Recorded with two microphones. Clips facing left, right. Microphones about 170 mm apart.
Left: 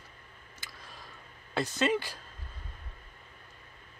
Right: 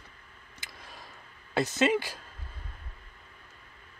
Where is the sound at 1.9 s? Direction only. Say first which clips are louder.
Right 2 dB; 10° right (ahead or behind).